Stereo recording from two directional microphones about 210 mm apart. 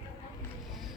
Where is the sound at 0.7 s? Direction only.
Centre (ahead or behind).